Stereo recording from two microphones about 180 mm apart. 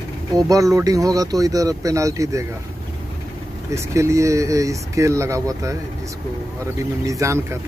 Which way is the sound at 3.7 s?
15° right (ahead or behind).